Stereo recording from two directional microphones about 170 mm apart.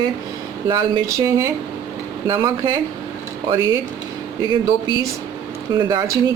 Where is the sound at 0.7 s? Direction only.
25° right (ahead or behind).